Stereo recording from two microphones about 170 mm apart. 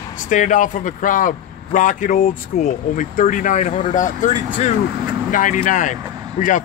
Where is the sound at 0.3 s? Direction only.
50° left (ahead or behind).